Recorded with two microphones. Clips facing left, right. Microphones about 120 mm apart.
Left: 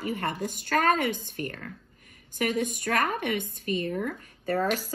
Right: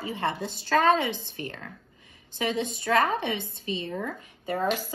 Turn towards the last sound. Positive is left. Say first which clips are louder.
# left 1 dB
turn(degrees=-15)  # may be behind; listen again after turning